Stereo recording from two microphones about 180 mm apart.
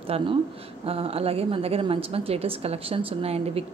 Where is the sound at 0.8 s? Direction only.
30° right (ahead or behind).